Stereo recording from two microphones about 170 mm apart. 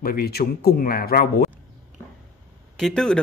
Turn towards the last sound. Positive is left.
turn(degrees=5)  # may be behind; listen again after turning